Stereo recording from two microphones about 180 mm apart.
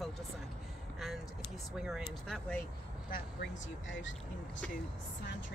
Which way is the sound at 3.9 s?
90° left.